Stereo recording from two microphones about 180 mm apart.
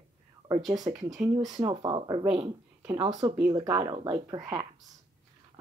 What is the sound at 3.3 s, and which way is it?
Speech, 20° right (ahead or behind).